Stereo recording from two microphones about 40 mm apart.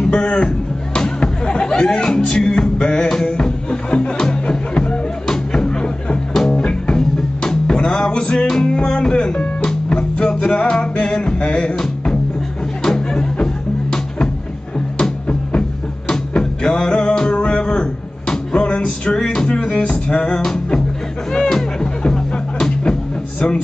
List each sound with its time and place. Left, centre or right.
0.0 s speech: centre
0.9 s music: centre
7.0 s music: centre
11.8 s music: centre
16.1 s music: centre